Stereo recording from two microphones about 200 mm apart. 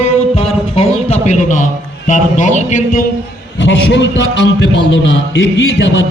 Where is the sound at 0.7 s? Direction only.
30° left (ahead or behind).